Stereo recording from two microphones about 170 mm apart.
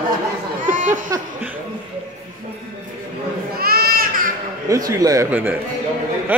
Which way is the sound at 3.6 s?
60° right (ahead or behind).